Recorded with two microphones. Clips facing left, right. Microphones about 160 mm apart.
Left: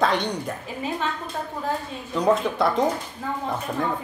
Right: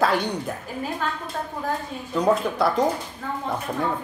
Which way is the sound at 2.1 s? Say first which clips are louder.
Even; centre (ahead or behind).